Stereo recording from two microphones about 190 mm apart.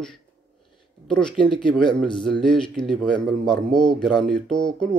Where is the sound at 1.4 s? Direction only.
25° left (ahead or behind).